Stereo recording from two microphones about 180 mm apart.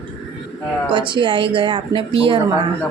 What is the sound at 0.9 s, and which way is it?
Speech, 25° right (ahead or behind).